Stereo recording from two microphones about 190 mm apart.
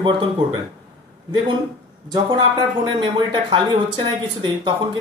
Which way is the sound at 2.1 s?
25° right (ahead or behind).